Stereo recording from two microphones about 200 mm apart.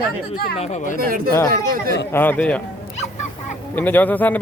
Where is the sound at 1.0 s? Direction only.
45° right (ahead or behind).